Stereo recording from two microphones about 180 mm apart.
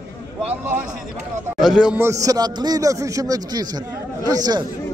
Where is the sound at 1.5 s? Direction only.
Centre (ahead or behind); by 4.6 s 20° right (ahead or behind).